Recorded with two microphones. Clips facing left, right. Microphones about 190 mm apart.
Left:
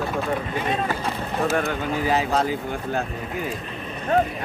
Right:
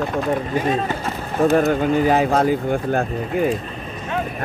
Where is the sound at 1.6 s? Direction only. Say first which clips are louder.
Right 8 dB; 45° right (ahead or behind).